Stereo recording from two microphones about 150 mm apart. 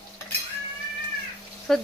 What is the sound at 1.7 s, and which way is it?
Speech, 5° left (ahead or behind).